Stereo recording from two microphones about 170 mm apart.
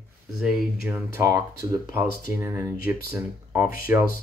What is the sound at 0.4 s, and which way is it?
Speech, centre (ahead or behind).